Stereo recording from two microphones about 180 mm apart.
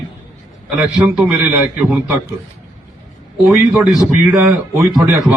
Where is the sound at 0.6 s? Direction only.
5° right (ahead or behind).